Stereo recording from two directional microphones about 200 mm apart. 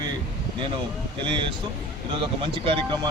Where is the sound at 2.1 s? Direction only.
25° right (ahead or behind).